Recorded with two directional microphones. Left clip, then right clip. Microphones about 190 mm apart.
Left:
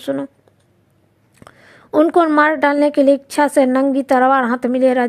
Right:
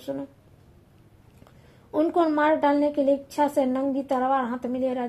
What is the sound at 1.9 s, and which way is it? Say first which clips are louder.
A woman's voice: left 10 dB; 45° left (ahead or behind).